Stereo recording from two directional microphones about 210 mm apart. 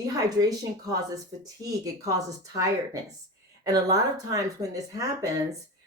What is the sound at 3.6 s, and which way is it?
Speech, 15° right (ahead or behind).